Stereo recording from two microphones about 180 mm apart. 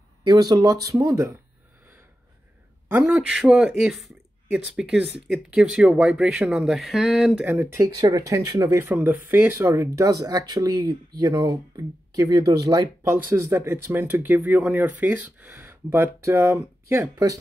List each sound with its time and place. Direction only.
0.2 s speech: 25° right (ahead or behind)
2.9 s speech: 10° right (ahead or behind)
7.5 s speech: 15° right (ahead or behind)